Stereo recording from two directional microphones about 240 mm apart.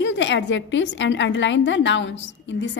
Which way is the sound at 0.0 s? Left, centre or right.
Left.